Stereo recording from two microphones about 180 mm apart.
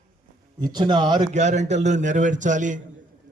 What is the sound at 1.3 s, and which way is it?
A man's voice, 40° right (ahead or behind).